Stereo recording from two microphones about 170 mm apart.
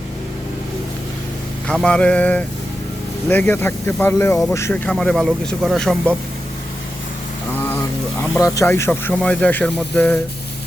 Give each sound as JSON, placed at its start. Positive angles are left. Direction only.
{"t": 1.6, "sound": "speech", "side_deg": 5}
{"t": 4.9, "sound": "speech", "side_deg": 5}
{"t": 7.6, "sound": "a sound", "side_deg": 10}
{"t": 8.4, "sound": "speech", "side_deg": 20}